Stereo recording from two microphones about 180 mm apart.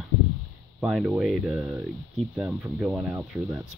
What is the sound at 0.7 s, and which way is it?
Speech, 5° right (ahead or behind).